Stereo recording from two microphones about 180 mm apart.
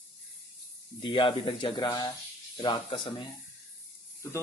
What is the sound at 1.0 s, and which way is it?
Speech, 25° left (ahead or behind).